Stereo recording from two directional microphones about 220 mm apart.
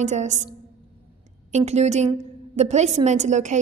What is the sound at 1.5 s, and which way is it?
A woman's voice, 30° right (ahead or behind).